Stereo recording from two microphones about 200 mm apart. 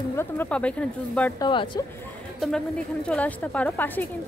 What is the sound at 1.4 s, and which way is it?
Speech, 25° left (ahead or behind).